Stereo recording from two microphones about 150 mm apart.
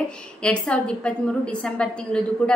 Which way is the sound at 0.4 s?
5° left (ahead or behind).